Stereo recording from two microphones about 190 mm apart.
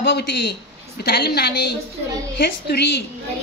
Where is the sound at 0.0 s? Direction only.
60° left (ahead or behind).